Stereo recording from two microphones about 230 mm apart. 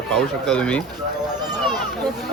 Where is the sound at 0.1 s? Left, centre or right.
Centre.